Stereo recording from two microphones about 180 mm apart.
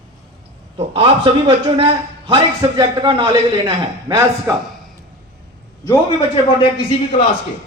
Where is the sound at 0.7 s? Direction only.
30° right (ahead or behind).